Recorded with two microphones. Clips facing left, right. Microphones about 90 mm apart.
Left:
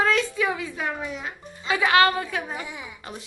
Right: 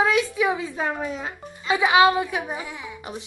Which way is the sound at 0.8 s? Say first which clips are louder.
Right 3 dB; 35° right (ahead or behind).